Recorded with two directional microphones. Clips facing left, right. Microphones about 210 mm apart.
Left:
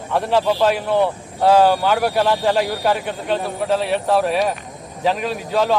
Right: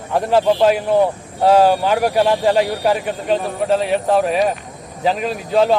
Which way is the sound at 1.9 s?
10° right (ahead or behind).